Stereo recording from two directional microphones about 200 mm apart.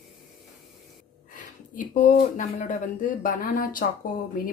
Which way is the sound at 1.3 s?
40° left (ahead or behind).